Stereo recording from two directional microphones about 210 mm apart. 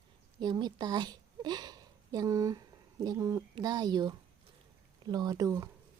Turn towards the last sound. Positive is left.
turn(degrees=-15)  # may be behind; listen again after turning